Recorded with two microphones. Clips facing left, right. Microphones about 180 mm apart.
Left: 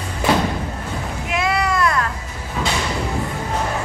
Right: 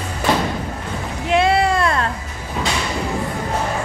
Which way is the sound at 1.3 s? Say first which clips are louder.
Right 5 dB; 30° right (ahead or behind).